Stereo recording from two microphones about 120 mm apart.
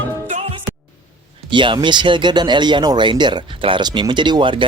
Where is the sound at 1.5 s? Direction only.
40° right (ahead or behind).